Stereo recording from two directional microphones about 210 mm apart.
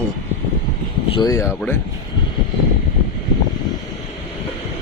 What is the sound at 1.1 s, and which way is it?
Speech, 15° left (ahead or behind).